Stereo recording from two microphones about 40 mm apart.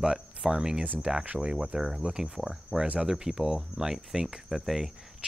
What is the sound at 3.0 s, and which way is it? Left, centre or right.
Speech, centre.